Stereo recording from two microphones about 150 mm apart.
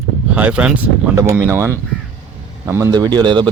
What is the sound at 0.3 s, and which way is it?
Speech, 10° right (ahead or behind).